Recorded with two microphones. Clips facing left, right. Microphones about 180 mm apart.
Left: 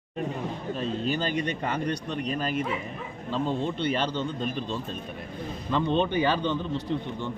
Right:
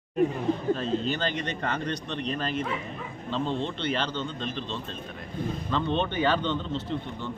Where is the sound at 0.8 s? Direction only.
10° left (ahead or behind).